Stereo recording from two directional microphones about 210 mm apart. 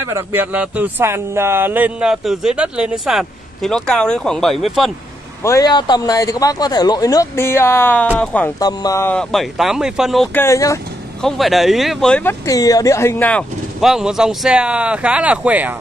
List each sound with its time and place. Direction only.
0.1 s speech: 10° right (ahead or behind)
5.4 s a man's voice: 15° left (ahead or behind)
8.5 s speech: 15° left (ahead or behind)
11.2 s speech: centre (ahead or behind)